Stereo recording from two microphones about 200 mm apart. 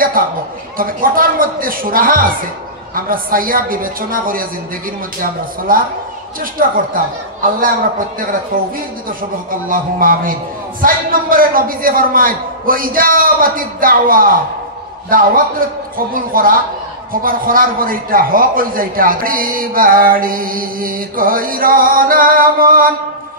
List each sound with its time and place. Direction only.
0.2 s a man's voice: 45° right (ahead or behind)
9.5 s a man's voice: 45° right (ahead or behind)